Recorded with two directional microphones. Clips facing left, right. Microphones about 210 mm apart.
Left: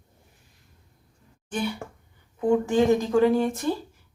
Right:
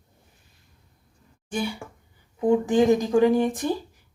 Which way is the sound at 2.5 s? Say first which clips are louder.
Right 1 dB; 15° right (ahead or behind).